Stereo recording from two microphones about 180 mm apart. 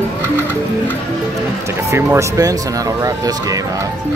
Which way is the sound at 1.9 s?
15° right (ahead or behind).